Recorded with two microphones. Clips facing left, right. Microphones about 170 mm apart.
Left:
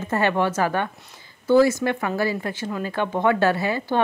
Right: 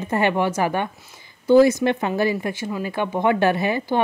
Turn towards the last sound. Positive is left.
turn(degrees=-15)  # may be behind; listen again after turning